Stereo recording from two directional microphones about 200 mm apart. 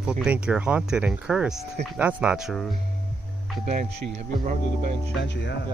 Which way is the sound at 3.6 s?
35° right (ahead or behind).